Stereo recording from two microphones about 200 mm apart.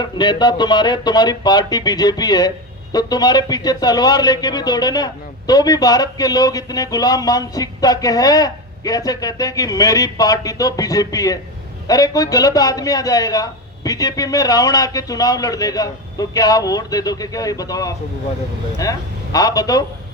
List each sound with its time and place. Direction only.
0.0 s a man's voice: 20° left (ahead or behind)